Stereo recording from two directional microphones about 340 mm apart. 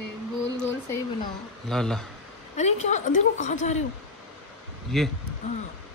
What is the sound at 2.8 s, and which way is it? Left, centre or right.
A woman's voice, left.